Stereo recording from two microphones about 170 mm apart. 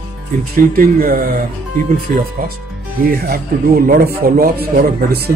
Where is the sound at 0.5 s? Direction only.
55° right (ahead or behind).